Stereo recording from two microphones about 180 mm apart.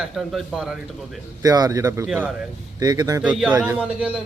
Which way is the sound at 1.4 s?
20° right (ahead or behind).